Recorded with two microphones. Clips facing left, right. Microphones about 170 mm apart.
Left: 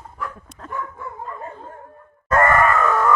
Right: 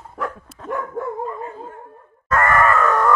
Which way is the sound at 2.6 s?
10° left (ahead or behind).